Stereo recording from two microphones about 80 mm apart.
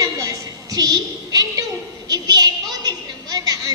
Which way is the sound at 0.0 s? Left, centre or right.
Right.